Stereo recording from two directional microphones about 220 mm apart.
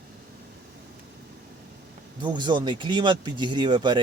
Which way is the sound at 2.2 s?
20° right (ahead or behind).